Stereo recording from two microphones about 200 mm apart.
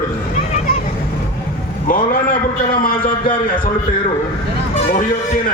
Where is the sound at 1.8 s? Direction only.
45° left (ahead or behind).